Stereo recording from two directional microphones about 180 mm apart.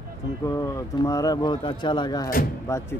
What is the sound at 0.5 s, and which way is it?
Speech, 20° left (ahead or behind).